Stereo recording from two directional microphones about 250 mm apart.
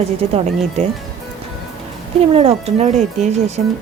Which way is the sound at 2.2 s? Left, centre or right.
Right.